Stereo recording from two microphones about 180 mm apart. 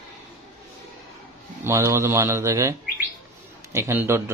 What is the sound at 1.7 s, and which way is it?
Speech, 15° right (ahead or behind).